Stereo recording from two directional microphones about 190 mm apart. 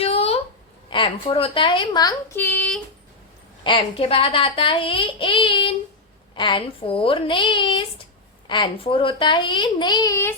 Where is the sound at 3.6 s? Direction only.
25° left (ahead or behind).